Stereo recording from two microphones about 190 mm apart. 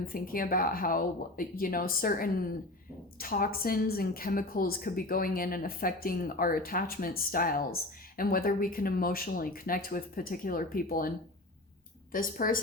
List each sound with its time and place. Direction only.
0.0 s a woman's voice: 50° left (ahead or behind)
12.1 s a woman's voice: 45° left (ahead or behind)